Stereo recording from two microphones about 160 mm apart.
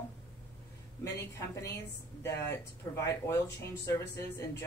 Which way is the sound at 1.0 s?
15° left (ahead or behind).